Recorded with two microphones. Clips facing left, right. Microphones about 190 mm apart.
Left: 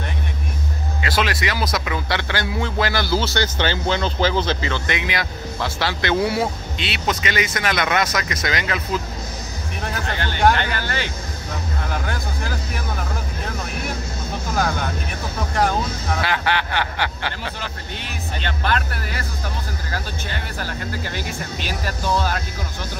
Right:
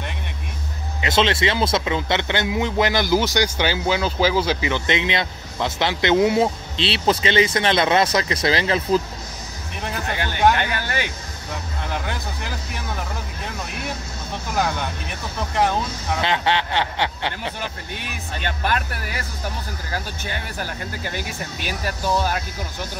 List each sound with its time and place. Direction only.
1.0 s a man's voice: 25° right (ahead or behind)
10.0 s speech: 15° right (ahead or behind)
16.2 s a man's voice: 25° right (ahead or behind)
18.4 s speech: 15° right (ahead or behind)
21.1 s speech: 10° right (ahead or behind)